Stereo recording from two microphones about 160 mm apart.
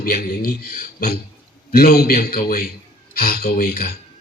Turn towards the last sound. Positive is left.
turn(degrees=65)  # may be behind; listen again after turning